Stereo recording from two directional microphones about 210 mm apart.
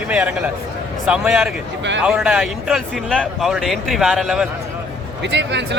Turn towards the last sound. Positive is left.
turn(degrees=-55)  # may be behind; listen again after turning